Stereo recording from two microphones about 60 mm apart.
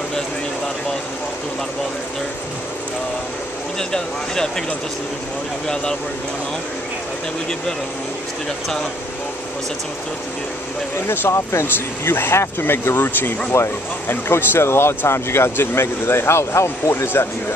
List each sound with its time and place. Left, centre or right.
3.9 s speech: centre
11.1 s speech: left
13.5 s speech: left